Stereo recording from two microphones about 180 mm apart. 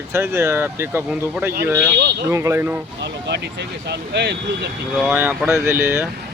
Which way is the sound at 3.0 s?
70° right (ahead or behind).